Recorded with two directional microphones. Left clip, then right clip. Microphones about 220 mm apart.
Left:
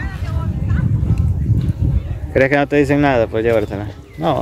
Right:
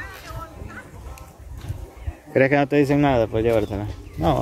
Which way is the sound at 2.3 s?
Centre (ahead or behind).